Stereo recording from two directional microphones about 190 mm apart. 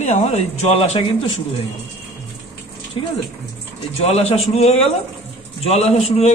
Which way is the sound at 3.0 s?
25° left (ahead or behind).